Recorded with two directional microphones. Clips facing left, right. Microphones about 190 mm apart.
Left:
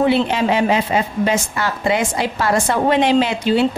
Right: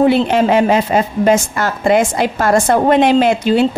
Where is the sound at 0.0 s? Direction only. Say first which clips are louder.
Right 4 dB; 45° right (ahead or behind).